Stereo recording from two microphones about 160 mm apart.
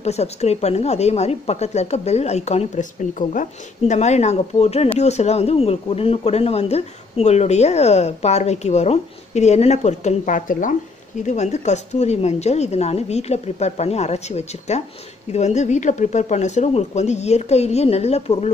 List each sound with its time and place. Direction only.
0.0 s speech: 40° left (ahead or behind)